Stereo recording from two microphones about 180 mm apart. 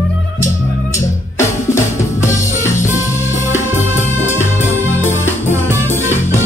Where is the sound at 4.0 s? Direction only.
15° left (ahead or behind).